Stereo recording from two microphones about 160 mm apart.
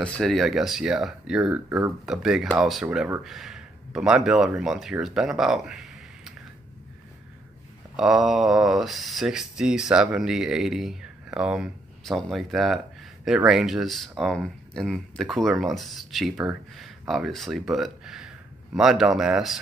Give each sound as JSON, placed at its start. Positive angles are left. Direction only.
{"t": 0.0, "sound": "speech", "side_deg": 5}
{"t": 1.7, "sound": "speech", "side_deg": -20}
{"t": 2.0, "sound": "speech", "side_deg": -5}
{"t": 7.9, "sound": "speech", "side_deg": 0}